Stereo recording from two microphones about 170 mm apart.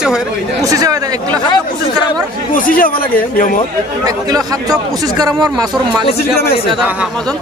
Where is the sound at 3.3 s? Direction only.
50° left (ahead or behind).